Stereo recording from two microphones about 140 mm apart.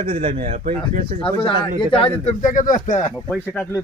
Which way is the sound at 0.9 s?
90° right.